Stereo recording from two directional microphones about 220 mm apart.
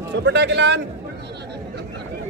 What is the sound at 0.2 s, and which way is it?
Speech, 50° right (ahead or behind).